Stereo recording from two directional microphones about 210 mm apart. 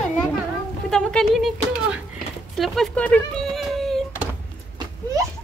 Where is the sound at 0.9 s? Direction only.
5° left (ahead or behind).